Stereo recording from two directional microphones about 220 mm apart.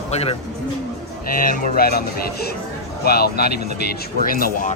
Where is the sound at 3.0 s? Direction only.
45° left (ahead or behind).